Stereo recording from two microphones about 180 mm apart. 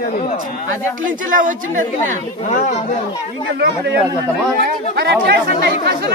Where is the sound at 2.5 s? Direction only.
40° left (ahead or behind).